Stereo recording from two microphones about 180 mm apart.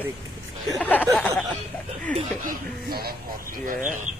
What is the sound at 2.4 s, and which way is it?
A man's voice, 55° right (ahead or behind).